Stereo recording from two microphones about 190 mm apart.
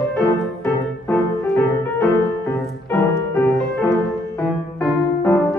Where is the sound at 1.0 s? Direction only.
10° left (ahead or behind).